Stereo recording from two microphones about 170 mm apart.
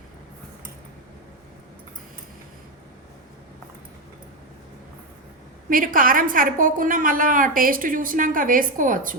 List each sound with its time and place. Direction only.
5.6 s a woman's voice: 55° right (ahead or behind)